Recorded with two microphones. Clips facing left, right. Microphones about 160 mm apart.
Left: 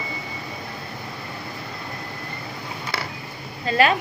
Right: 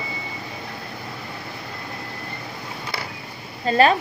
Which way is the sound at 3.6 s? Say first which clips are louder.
Right 3 dB; 35° right (ahead or behind).